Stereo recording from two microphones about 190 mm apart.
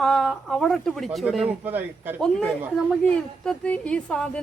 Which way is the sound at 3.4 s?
5° left (ahead or behind).